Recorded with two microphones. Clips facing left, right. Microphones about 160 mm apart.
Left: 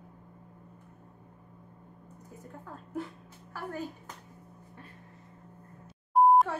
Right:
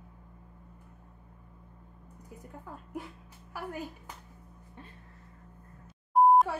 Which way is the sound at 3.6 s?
10° right (ahead or behind).